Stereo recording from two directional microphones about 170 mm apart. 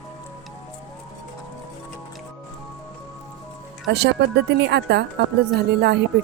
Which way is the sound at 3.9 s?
80° right.